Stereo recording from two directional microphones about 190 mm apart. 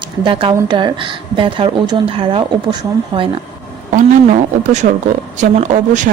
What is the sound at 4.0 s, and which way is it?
Speech, 40° right (ahead or behind).